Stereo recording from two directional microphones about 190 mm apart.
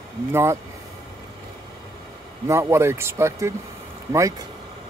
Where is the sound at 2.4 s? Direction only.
15° right (ahead or behind).